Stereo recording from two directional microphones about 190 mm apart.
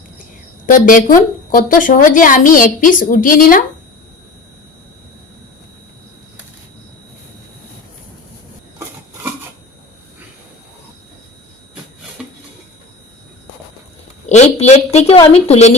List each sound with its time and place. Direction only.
0.7 s a woman's voice: 45° left (ahead or behind)
12.2 s a sound: 5° right (ahead or behind)
14.3 s a woman's voice: 35° left (ahead or behind)